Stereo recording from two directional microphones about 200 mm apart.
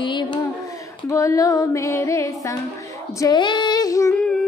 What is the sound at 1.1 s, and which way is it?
Female singing, 15° left (ahead or behind).